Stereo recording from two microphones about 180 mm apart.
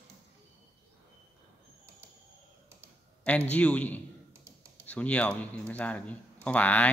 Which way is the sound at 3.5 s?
10° left (ahead or behind).